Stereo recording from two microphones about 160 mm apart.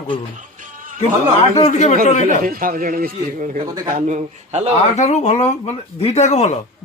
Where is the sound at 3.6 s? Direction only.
20° right (ahead or behind).